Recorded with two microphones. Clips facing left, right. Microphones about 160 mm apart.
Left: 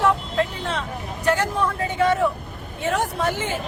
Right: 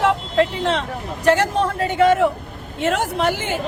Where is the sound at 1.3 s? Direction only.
90° right.